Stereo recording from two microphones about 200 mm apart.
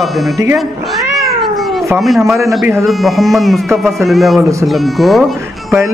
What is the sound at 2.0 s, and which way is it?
Speech, centre (ahead or behind).